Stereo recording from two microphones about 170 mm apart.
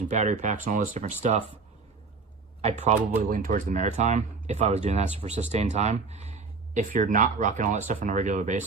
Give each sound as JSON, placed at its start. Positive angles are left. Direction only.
{"t": 0.2, "sound": "speech", "side_deg": -45}
{"t": 2.6, "sound": "speech", "side_deg": -40}
{"t": 3.2, "sound": "speech", "side_deg": -55}